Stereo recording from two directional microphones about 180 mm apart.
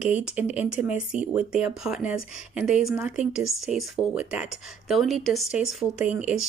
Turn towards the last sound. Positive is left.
turn(degrees=-5)  # may be behind; listen again after turning